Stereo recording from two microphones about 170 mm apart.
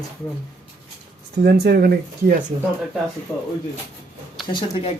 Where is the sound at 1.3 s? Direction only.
70° right (ahead or behind).